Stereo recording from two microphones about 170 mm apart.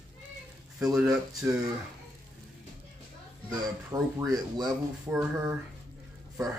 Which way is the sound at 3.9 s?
20° right (ahead or behind).